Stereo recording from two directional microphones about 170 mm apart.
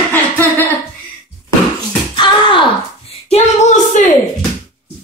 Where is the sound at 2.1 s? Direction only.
30° left (ahead or behind); by 4.0 s 45° left (ahead or behind).